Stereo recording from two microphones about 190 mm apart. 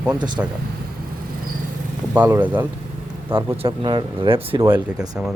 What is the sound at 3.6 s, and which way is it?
Speech, 25° right (ahead or behind).